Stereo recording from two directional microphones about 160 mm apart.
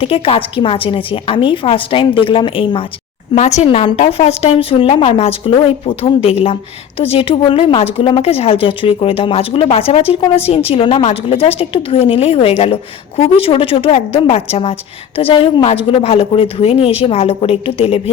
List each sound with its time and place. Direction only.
0.0 s a woman's voice: 35° left (ahead or behind)
3.3 s a woman's voice: 45° left (ahead or behind)